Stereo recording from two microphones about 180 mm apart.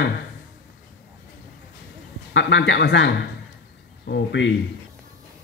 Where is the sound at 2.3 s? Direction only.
85° left.